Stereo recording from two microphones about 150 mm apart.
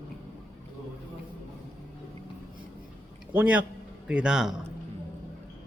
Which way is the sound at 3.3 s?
10° right (ahead or behind).